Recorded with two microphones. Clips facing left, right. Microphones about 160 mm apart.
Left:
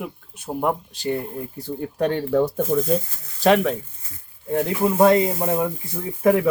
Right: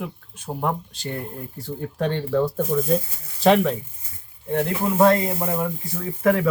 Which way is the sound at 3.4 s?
Centre (ahead or behind).